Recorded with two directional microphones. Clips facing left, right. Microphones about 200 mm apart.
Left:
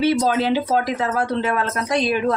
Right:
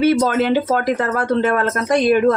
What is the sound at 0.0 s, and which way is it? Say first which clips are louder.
Speech: right 3 dB; 55° right (ahead or behind).